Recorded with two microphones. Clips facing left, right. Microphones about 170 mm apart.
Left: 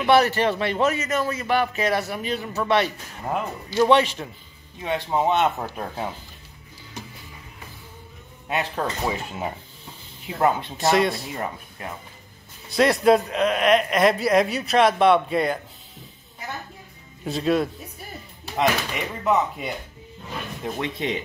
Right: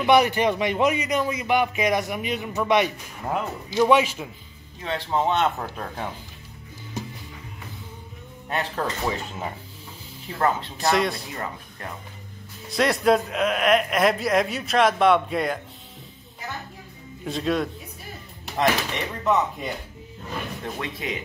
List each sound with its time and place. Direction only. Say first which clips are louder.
0.0 s a man's voice: even; 15° right (ahead or behind)
4.8 s speech: left 2 dB; 10° left (ahead or behind)
8.5 s speech: left 1 dB; 10° left (ahead or behind)
10.8 s speech: left 2 dB; centre (ahead or behind)
11.3 s speech: left 2 dB; 20° left (ahead or behind)
12.6 s speech: left 3 dB; centre (ahead or behind)
17.2 s speech: left 3 dB; centre (ahead or behind)
20.6 s speech: left 4 dB; 20° left (ahead or behind)